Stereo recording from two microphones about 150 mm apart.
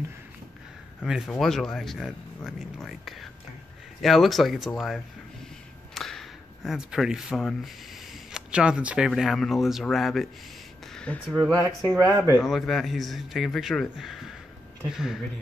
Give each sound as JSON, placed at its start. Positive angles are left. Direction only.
{"t": 1.0, "sound": "speech", "side_deg": 0}
{"t": 10.9, "sound": "a sound", "side_deg": 5}
{"t": 11.9, "sound": "speech", "side_deg": -20}
{"t": 12.4, "sound": "speech", "side_deg": 0}